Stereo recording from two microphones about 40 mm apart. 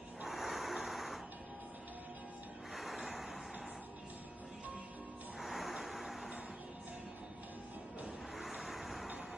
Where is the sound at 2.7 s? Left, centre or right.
Centre.